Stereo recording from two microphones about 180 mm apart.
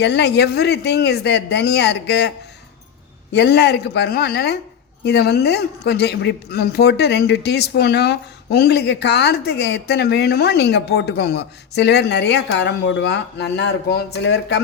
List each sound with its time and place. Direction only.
0.0 s speech: 70° left (ahead or behind)
3.3 s speech: 70° left (ahead or behind)